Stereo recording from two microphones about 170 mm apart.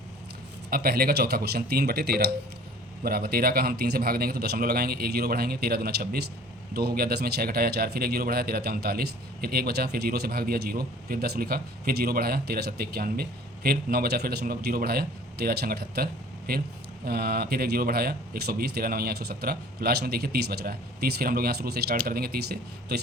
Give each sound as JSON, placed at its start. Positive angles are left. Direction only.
{"t": 0.7, "sound": "speech", "side_deg": -65}